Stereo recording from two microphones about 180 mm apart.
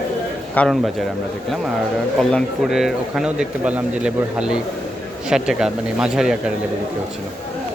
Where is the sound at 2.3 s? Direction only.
Centre (ahead or behind).